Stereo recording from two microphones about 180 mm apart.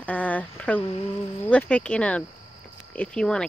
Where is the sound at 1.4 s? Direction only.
10° left (ahead or behind).